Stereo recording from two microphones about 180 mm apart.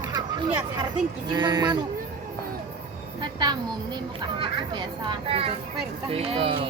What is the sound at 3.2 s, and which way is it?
Speech, 25° right (ahead or behind).